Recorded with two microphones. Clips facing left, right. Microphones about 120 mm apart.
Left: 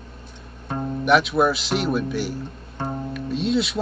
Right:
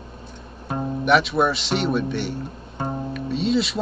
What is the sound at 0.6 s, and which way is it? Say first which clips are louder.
Speech: even; 5° right (ahead or behind).